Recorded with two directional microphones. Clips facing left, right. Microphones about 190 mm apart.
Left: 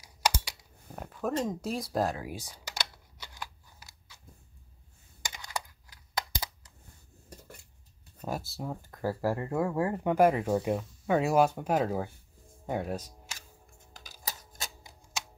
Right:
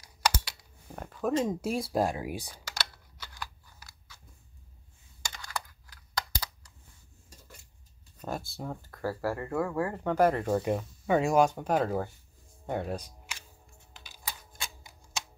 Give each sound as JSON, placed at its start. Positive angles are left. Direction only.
{"t": 0.0, "sound": "computer keyboard", "side_deg": 10}
{"t": 1.4, "sound": "speech", "side_deg": -5}
{"t": 2.6, "sound": "a sound", "side_deg": 20}
{"t": 5.2, "sound": "computer keyboard", "side_deg": 15}
{"t": 8.2, "sound": "speech", "side_deg": 5}
{"t": 8.8, "sound": "speech", "side_deg": 15}
{"t": 13.3, "sound": "typewriter", "side_deg": 40}